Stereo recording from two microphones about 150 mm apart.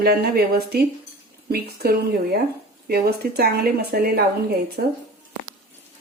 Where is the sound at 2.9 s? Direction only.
90° right.